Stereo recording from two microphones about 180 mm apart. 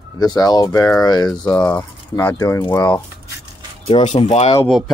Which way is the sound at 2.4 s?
15° left (ahead or behind).